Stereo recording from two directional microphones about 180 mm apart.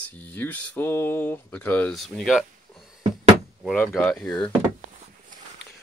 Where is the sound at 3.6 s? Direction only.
5° left (ahead or behind).